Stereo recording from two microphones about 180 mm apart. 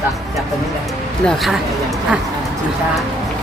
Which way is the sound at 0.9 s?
Centre (ahead or behind).